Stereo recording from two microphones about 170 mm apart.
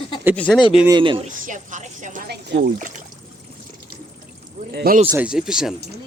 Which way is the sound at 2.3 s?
75° right (ahead or behind).